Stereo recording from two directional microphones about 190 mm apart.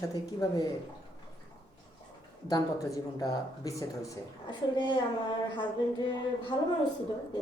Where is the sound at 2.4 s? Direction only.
20° left (ahead or behind).